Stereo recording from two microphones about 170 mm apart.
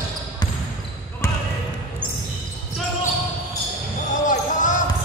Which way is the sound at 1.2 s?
15° left (ahead or behind).